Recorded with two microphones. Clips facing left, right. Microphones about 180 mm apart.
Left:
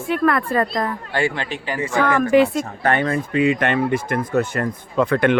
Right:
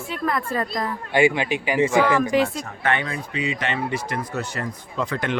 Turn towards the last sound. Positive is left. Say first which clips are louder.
# left 9 dB
turn(degrees=60)  # may be behind; listen again after turning